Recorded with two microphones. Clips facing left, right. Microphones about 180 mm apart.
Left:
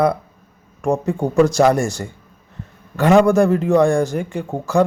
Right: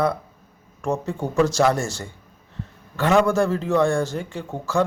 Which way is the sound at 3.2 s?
15° left (ahead or behind).